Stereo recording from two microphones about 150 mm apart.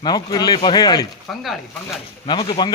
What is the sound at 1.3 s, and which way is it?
Speech, centre (ahead or behind).